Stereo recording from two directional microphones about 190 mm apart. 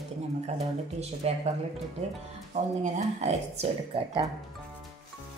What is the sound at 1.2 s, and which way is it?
Speech, 35° right (ahead or behind).